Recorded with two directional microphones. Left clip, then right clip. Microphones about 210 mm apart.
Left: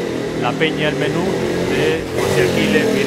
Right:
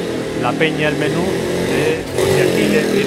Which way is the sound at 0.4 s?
10° right (ahead or behind).